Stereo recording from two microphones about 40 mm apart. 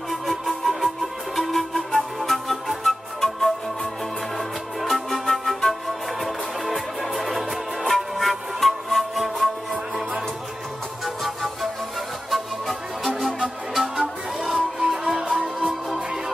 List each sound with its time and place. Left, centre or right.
0.1 s music: centre
12.3 s music: centre
13.9 s music: centre